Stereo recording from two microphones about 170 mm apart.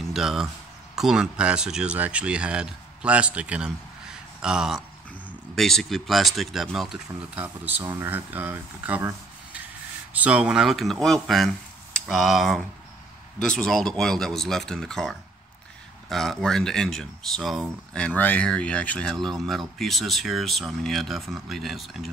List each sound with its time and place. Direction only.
0.0 s speech: centre (ahead or behind)